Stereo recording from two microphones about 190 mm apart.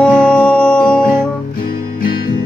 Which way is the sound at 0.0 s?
5° left (ahead or behind).